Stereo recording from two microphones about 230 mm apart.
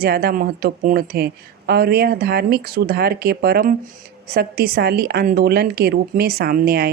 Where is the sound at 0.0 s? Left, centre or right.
Right.